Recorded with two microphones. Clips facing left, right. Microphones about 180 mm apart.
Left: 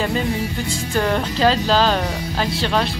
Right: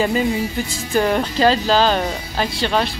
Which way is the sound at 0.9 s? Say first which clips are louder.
Right 3 dB; 10° right (ahead or behind).